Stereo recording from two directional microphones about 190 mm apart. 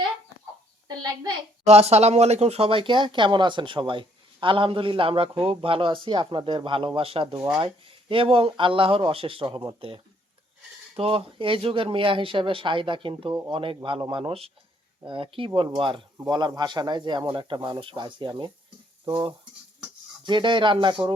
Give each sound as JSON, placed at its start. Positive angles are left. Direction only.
{"t": 1.6, "sound": "speech", "side_deg": -35}
{"t": 19.0, "sound": "stir", "side_deg": -25}
{"t": 20.2, "sound": "speech", "side_deg": -25}